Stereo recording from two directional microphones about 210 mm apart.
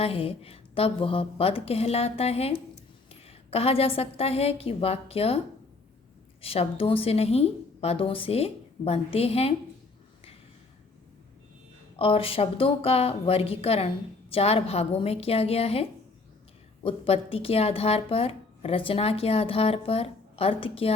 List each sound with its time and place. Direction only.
0.0 s speech: 25° left (ahead or behind)
6.4 s speech: 25° left (ahead or behind)
11.9 s speech: 25° left (ahead or behind)